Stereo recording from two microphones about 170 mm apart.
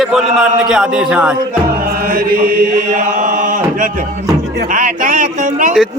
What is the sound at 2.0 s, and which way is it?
Chant, 55° right (ahead or behind).